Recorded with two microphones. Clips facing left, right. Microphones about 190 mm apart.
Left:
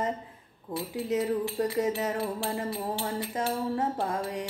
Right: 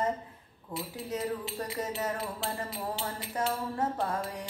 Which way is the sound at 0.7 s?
15° left (ahead or behind).